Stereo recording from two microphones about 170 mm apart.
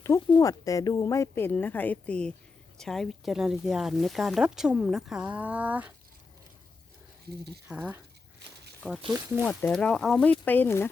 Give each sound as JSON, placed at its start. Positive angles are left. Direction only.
{"t": 0.0, "sound": "speech", "side_deg": 20}
{"t": 7.3, "sound": "speech", "side_deg": -70}
{"t": 7.7, "sound": "speech", "side_deg": -10}
{"t": 9.1, "sound": "speech", "side_deg": -15}
{"t": 9.5, "sound": "speech", "side_deg": 10}